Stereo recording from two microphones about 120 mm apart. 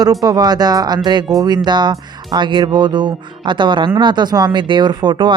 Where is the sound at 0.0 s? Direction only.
30° right (ahead or behind).